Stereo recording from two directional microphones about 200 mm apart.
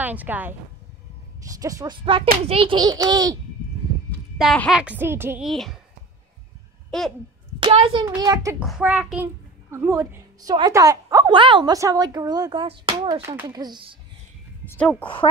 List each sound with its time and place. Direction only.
0.0 s a child's voice: 10° right (ahead or behind)
4.4 s a child's voice: centre (ahead or behind)
5.5 s a child's voice: centre (ahead or behind)
6.9 s speech: centre (ahead or behind)
7.6 s a child's voice: 25° right (ahead or behind)
8.6 s a child's voice: 5° right (ahead or behind); by 13.2 s 25° right (ahead or behind)
13.2 s a child's voice: 15° right (ahead or behind)
14.7 s a woman's voice: 5° left (ahead or behind)